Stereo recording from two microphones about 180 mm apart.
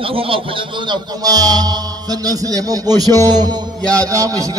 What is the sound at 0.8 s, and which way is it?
A man's voice, 20° right (ahead or behind).